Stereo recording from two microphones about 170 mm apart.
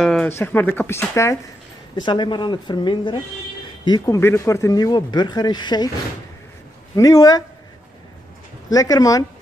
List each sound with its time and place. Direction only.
0.0 s a sound: 5° left (ahead or behind)
0.4 s speech: 10° left (ahead or behind)
2.0 s speech: 25° left (ahead or behind)
7.0 s speech: 20° left (ahead or behind)
8.6 s speech: 20° left (ahead or behind)